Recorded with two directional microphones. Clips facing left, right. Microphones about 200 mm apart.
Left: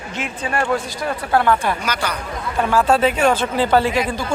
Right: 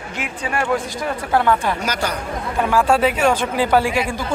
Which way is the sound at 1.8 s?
45° right (ahead or behind).